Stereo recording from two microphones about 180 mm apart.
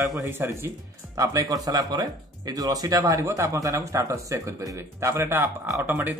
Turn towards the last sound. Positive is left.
turn(degrees=-10)  # may be behind; listen again after turning